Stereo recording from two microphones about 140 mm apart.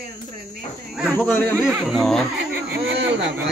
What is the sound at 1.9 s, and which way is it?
Speech, centre (ahead or behind).